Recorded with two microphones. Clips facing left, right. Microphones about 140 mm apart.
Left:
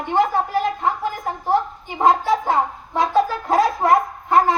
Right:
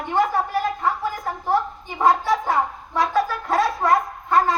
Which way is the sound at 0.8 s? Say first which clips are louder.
Left 1 dB; 20° left (ahead or behind).